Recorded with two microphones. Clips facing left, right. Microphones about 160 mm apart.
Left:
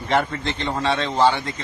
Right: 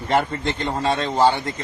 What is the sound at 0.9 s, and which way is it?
Speech, 45° right (ahead or behind).